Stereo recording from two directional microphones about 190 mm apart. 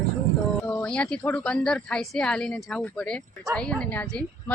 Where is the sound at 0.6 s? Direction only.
10° left (ahead or behind).